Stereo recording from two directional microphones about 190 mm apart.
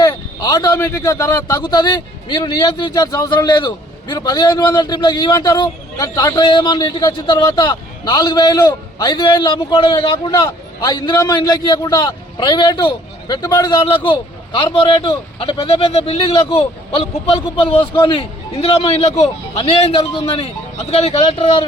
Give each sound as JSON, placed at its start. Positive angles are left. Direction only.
{"t": 0.0, "sound": "a man's voice", "side_deg": 20}